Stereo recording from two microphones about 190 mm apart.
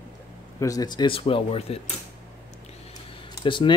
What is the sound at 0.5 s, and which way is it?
Speech, 20° left (ahead or behind).